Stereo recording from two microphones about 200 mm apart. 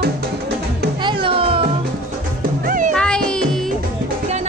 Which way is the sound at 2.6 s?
45° right (ahead or behind).